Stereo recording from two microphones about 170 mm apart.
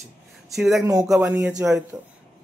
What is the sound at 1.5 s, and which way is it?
Speech, 5° right (ahead or behind).